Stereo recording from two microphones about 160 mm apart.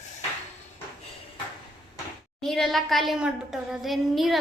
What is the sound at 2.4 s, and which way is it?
A woman's voice, centre (ahead or behind).